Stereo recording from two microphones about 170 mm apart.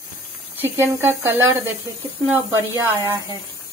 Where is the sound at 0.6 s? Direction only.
10° right (ahead or behind).